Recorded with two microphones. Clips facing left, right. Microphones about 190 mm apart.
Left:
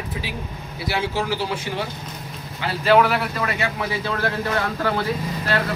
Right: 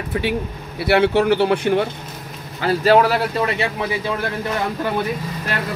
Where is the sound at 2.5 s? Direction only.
40° right (ahead or behind); by 4.1 s 20° right (ahead or behind).